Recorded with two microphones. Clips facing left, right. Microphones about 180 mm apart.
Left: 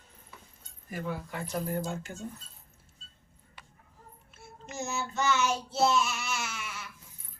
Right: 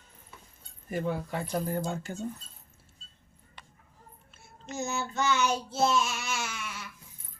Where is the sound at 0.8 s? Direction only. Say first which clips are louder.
Right 5 dB; 25° right (ahead or behind).